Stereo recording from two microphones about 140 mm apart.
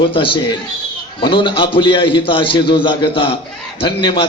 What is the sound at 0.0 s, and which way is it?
A man's voice, 35° left (ahead or behind).